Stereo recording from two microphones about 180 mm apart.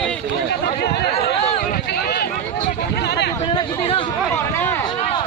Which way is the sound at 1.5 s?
60° left (ahead or behind).